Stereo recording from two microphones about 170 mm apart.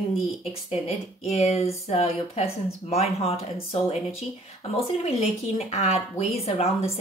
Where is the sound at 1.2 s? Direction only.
40° left (ahead or behind).